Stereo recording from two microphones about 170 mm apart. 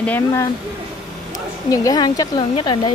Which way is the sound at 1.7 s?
20° left (ahead or behind).